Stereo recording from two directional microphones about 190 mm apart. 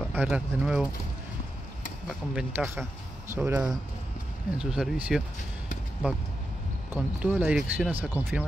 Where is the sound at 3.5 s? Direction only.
20° right (ahead or behind).